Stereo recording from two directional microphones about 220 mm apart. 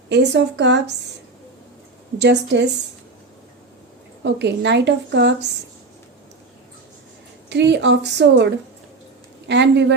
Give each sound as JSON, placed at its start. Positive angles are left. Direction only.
{"t": 0.1, "sound": "a woman's voice", "side_deg": -50}
{"t": 2.1, "sound": "a woman's voice", "side_deg": -50}
{"t": 4.2, "sound": "a woman's voice", "side_deg": -50}
{"t": 7.5, "sound": "a woman's voice", "side_deg": -50}